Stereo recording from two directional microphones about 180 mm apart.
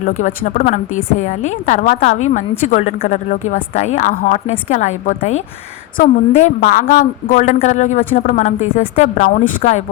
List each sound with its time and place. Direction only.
0.0 s a woman's voice: 45° left (ahead or behind)